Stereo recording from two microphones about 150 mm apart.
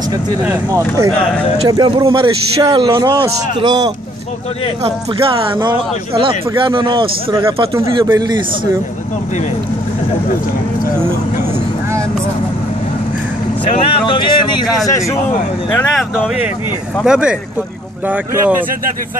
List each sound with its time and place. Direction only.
0.7 s a man's voice: 20° right (ahead or behind)
5.5 s a man's voice: 30° right (ahead or behind)
7.8 s a man's voice: 25° right (ahead or behind)
13.7 s speech: 40° left (ahead or behind); by 15.1 s 20° left (ahead or behind)
15.7 s speech: 5° left (ahead or behind)
17.0 s speech: 5° right (ahead or behind)